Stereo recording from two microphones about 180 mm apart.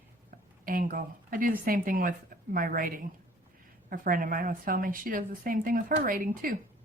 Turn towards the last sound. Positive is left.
turn(degrees=-50)  # may be behind; listen again after turning